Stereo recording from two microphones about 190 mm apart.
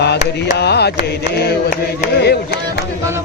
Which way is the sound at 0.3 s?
60° left (ahead or behind).